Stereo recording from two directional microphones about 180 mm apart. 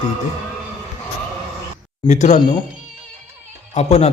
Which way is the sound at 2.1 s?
40° left (ahead or behind).